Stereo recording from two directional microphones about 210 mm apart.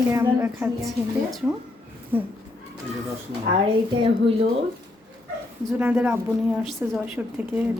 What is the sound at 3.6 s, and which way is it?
Speech, 25° right (ahead or behind).